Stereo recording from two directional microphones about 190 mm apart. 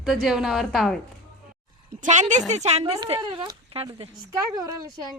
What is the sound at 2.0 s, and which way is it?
Speech, 40° right (ahead or behind).